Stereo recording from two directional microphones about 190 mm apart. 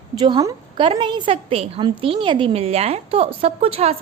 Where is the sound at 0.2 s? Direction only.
25° right (ahead or behind).